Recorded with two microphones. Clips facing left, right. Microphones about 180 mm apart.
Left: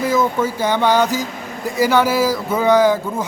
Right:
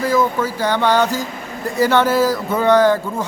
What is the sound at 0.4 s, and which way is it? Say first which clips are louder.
A man's voice: left 1 dB; 20° left (ahead or behind).